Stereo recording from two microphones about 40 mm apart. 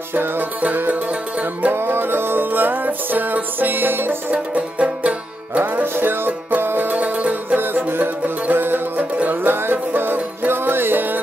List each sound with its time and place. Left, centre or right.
0.1 s music: right
1.7 s music: right
4.3 s music: right
5.9 s music: right
6.9 s music: right
7.5 s music: right
9.2 s music: right
9.6 s music: right